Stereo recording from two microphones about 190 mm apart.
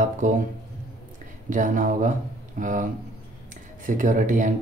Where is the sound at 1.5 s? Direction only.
45° right (ahead or behind).